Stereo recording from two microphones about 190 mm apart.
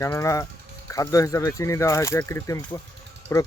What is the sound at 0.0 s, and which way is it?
Speech, 15° left (ahead or behind).